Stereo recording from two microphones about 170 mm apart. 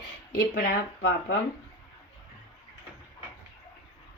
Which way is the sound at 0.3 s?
60° left (ahead or behind).